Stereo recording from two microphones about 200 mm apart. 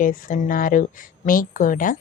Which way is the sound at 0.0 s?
40° left (ahead or behind).